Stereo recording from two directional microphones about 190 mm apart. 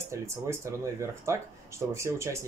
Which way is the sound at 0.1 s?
15° right (ahead or behind).